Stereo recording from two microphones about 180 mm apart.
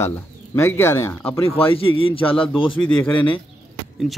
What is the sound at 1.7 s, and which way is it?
Speech, 30° left (ahead or behind).